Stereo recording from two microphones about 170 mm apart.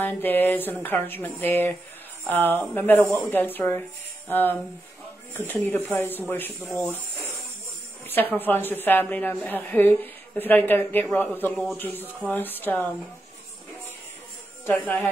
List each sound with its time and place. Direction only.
0.0 s a woman's voice: 10° left (ahead or behind)
6.8 s speech: 15° right (ahead or behind)
8.4 s a woman's voice: 10° left (ahead or behind)
14.7 s a woman's voice: 10° left (ahead or behind)